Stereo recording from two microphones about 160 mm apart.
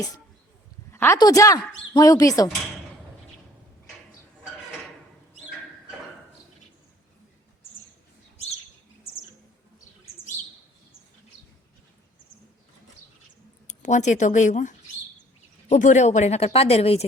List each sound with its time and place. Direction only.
0.9 s a sound: 15° left (ahead or behind)
1.2 s a woman's voice: 20° left (ahead or behind)
13.7 s speech: 50° left (ahead or behind)